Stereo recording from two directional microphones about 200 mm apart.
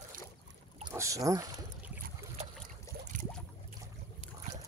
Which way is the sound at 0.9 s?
15° right (ahead or behind).